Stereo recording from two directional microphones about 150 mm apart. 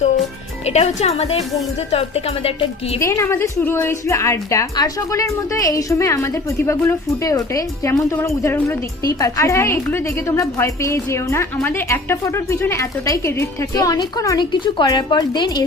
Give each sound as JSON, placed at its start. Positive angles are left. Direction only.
{"t": 0.6, "sound": "a woman's voice", "side_deg": 45}
{"t": 3.0, "sound": "a woman's voice", "side_deg": 20}